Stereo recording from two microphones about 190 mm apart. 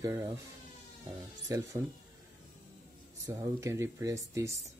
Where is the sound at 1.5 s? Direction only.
20° right (ahead or behind).